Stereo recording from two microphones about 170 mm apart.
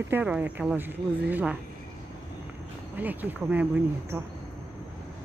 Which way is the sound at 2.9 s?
10° right (ahead or behind).